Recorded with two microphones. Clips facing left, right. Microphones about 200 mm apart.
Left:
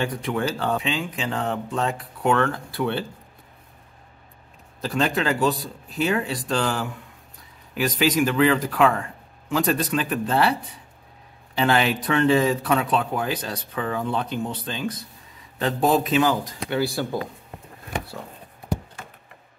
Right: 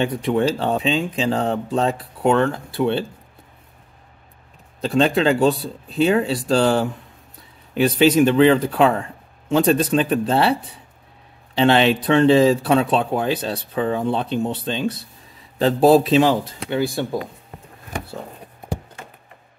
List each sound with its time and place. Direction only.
0.0 s speech: 25° right (ahead or behind)
4.8 s speech: 25° right (ahead or behind)
11.5 s speech: 25° right (ahead or behind)